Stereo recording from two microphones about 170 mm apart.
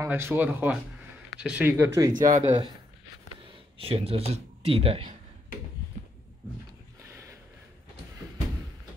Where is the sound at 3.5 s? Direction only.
35° right (ahead or behind).